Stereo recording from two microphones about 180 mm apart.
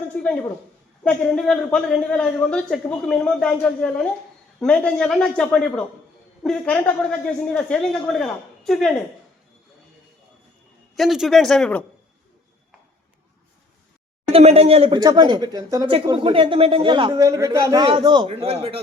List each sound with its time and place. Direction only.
1.0 s a man's voice: 5° left (ahead or behind)
10.9 s a man's voice: centre (ahead or behind)
14.3 s a man's voice: 35° right (ahead or behind)